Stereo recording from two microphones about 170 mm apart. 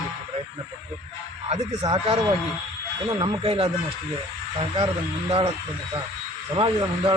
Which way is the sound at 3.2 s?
30° right (ahead or behind).